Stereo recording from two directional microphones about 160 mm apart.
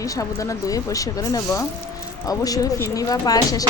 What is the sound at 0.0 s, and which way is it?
Speech, 20° left (ahead or behind).